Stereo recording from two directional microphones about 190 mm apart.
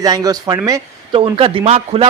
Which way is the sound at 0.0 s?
20° right (ahead or behind).